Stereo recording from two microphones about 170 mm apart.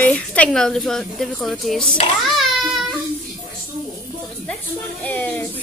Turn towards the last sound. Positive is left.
turn(degrees=10)  # may be behind; listen again after turning